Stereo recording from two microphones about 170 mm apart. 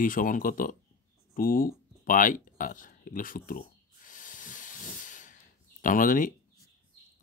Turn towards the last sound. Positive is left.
turn(degrees=50)  # may be behind; listen again after turning